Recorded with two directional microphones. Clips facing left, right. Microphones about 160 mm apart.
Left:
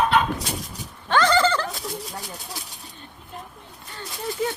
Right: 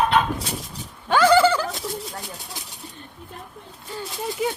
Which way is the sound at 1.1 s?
10° right (ahead or behind).